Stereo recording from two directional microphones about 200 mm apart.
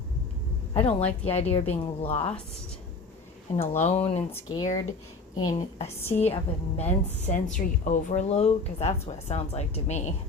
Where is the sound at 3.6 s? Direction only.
30° left (ahead or behind).